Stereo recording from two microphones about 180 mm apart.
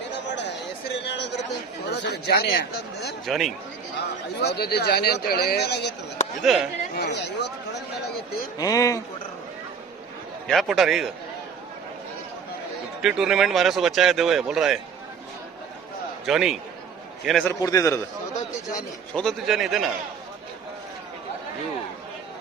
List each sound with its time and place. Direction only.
0.9 s a sound: 70° left (ahead or behind)
1.9 s speech: 65° left (ahead or behind)
3.2 s speech: centre (ahead or behind)
3.9 s speech: 65° left (ahead or behind)
6.4 s speech: centre (ahead or behind)
6.9 s speech: 65° left (ahead or behind)
8.5 s speech: 20° left (ahead or behind)
10.4 s speech: centre (ahead or behind)
13.0 s speech: 5° right (ahead or behind)
16.2 s speech: centre (ahead or behind)
17.5 s a man's voice: 20° left (ahead or behind)
19.1 s speech: centre (ahead or behind)